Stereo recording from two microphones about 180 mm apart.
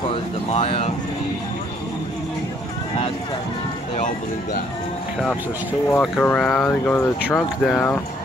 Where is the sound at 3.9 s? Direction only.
45° left (ahead or behind).